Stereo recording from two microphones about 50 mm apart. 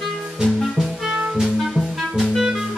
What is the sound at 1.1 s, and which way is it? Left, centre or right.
Music, right.